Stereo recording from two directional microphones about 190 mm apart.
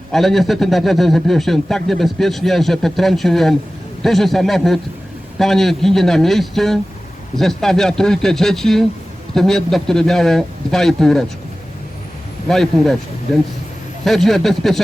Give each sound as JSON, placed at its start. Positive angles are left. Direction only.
{"t": 0.1, "sound": "speech", "side_deg": 0}
{"t": 12.5, "sound": "speech", "side_deg": 0}
{"t": 14.0, "sound": "speech", "side_deg": 0}